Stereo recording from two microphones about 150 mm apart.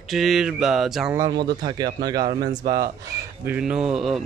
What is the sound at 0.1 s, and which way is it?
Speech, centre (ahead or behind).